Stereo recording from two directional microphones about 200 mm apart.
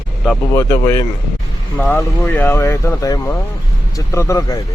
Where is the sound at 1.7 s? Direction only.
10° left (ahead or behind).